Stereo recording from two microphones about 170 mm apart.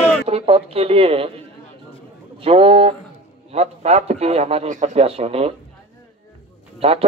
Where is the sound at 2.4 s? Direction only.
35° right (ahead or behind).